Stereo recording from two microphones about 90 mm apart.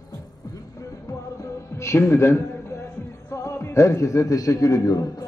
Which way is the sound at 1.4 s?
30° left (ahead or behind).